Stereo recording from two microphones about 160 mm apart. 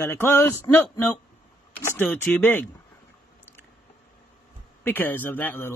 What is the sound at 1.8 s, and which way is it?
Speech, 10° left (ahead or behind).